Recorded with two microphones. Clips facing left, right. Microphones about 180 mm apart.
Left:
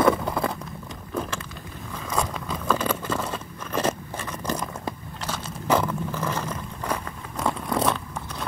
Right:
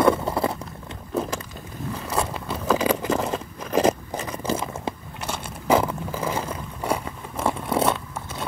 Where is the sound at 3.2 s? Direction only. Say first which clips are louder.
Right 4 dB; 40° right (ahead or behind).